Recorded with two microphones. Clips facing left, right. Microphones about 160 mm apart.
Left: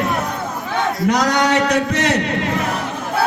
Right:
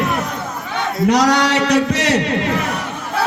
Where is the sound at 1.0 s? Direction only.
55° left (ahead or behind).